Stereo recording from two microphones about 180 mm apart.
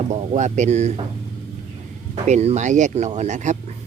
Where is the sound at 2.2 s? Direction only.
40° right (ahead or behind).